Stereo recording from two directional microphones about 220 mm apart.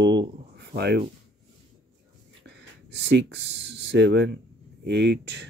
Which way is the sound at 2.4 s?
50° right (ahead or behind).